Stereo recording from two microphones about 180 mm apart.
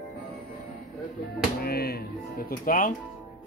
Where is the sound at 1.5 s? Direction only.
60° left (ahead or behind).